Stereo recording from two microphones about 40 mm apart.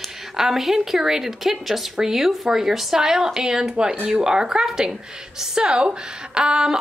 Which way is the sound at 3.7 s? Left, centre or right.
Right.